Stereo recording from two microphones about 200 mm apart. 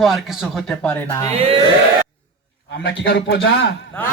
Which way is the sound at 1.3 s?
30° right (ahead or behind).